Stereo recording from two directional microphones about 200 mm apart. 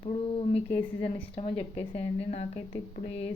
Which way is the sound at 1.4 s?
30° left (ahead or behind).